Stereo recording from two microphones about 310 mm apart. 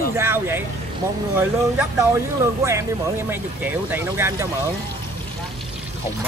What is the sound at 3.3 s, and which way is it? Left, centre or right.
Speech, centre.